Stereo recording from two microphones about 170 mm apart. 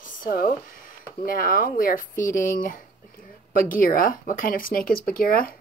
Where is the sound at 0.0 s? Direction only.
55° left (ahead or behind).